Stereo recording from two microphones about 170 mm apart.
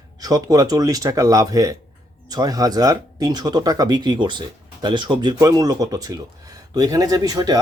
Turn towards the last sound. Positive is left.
turn(degrees=-25)  # may be behind; listen again after turning